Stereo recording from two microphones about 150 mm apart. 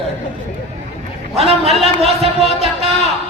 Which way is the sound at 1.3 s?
45° right (ahead or behind).